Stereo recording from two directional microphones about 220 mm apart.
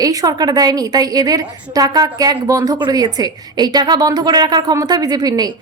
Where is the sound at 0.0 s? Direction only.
15° right (ahead or behind).